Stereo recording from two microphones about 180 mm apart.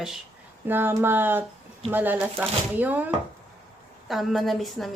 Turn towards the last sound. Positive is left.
turn(degrees=0)  # may be behind; listen again after turning